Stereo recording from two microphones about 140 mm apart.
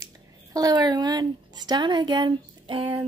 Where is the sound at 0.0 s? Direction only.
25° right (ahead or behind).